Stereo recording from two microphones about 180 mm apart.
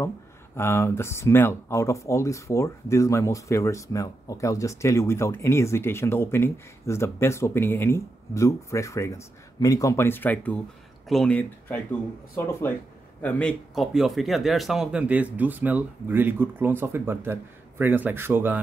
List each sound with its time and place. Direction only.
0.6 s speech: 15° left (ahead or behind); by 18.6 s 10° right (ahead or behind)